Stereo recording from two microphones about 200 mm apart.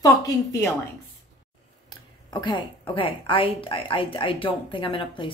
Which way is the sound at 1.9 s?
20° left (ahead or behind).